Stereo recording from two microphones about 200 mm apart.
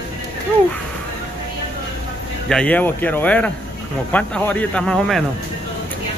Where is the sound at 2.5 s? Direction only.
5° left (ahead or behind).